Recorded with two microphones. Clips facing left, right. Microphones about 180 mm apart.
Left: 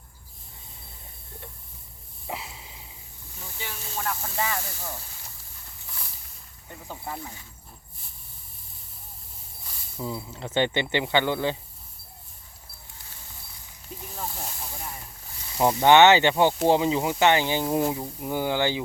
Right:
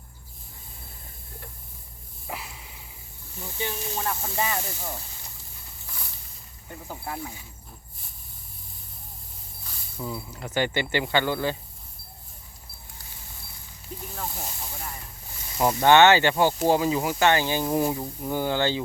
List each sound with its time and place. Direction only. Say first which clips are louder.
2.2 s a sound: left 1 dB; 25° left (ahead or behind)
3.4 s speech: right 7 dB; 20° right (ahead or behind)
6.8 s speech: right 1 dB; 5° right (ahead or behind)
10.0 s speech: left 1 dB; 20° left (ahead or behind)
14.2 s speech: left 1 dB; centre (ahead or behind)
14.7 s a sound: even; centre (ahead or behind)
15.5 s speech: left 1 dB; 15° left (ahead or behind)